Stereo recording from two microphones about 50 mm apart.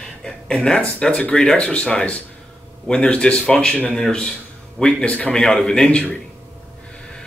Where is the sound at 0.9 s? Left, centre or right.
Left.